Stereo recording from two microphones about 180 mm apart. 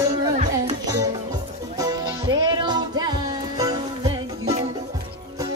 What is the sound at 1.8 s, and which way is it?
Music, 20° right (ahead or behind).